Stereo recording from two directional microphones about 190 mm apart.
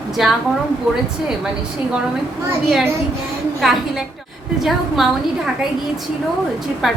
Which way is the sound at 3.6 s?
Centre (ahead or behind).